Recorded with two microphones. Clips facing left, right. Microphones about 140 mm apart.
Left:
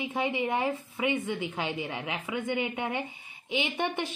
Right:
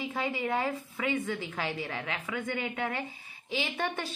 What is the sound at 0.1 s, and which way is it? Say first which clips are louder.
A woman's voice: left 3 dB; 20° left (ahead or behind).